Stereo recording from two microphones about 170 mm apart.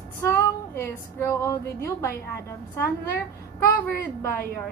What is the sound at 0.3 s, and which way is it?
A woman's voice, 15° left (ahead or behind).